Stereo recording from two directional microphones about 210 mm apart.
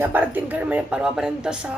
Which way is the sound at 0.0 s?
10° right (ahead or behind).